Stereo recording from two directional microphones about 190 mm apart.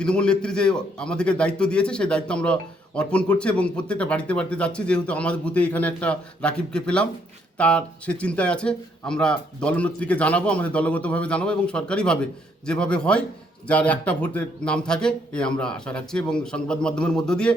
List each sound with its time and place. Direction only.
0.0 s a man's voice: 5° left (ahead or behind)